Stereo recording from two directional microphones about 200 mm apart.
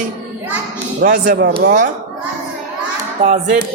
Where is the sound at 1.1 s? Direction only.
45° right (ahead or behind).